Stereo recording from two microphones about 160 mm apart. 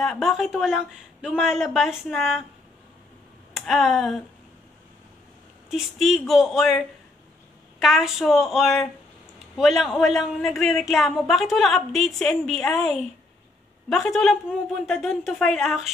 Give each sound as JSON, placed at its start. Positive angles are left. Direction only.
{"t": 0.0, "sound": "speech", "side_deg": 0}
{"t": 3.5, "sound": "speech", "side_deg": 0}
{"t": 5.7, "sound": "speech", "side_deg": 0}
{"t": 7.8, "sound": "speech", "side_deg": 0}